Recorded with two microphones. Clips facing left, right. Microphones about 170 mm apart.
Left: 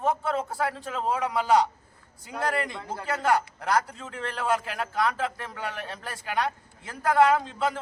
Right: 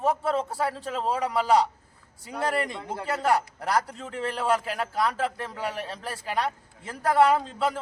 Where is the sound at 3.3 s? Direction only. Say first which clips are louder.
Even; 35° right (ahead or behind).